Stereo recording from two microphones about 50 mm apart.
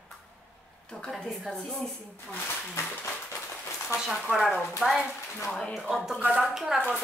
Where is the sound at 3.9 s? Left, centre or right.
Centre.